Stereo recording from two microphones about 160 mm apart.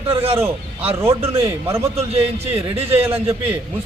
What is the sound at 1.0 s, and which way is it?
A man's voice, 35° right (ahead or behind).